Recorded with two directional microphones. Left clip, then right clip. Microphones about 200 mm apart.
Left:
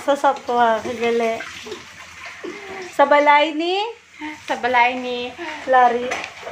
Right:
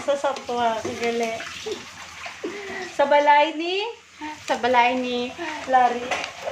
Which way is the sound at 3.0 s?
35° left (ahead or behind).